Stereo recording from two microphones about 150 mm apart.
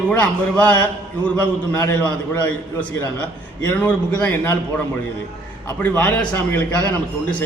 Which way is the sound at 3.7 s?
10° left (ahead or behind).